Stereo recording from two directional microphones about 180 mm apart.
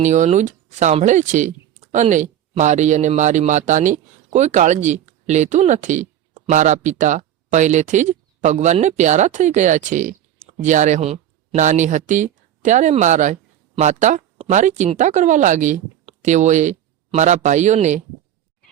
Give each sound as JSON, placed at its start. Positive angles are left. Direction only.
{"t": 0.0, "sound": "speech", "side_deg": -40}